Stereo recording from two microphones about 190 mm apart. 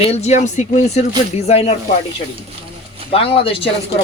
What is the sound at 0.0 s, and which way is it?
Speech, 35° left (ahead or behind).